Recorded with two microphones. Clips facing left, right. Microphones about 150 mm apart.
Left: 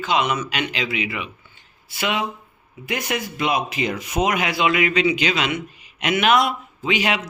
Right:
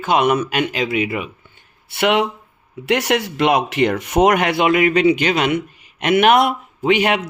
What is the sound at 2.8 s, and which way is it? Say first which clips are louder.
Speech: right 8 dB; 75° right (ahead or behind).